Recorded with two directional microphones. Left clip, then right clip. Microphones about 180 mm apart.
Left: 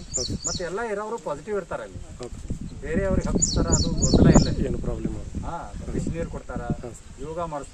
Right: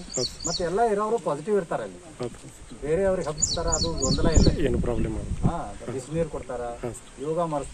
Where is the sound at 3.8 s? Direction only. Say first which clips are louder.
Even; 50° left (ahead or behind).